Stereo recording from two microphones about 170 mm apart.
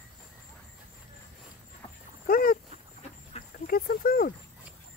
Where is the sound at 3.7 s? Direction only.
60° left (ahead or behind).